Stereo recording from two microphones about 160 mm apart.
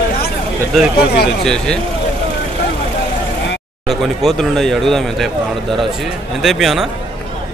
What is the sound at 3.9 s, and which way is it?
Speech, centre (ahead or behind).